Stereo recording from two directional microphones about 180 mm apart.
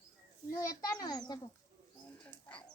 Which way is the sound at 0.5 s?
20° left (ahead or behind).